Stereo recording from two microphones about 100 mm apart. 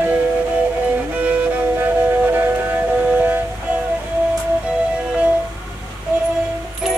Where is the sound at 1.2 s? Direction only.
15° right (ahead or behind).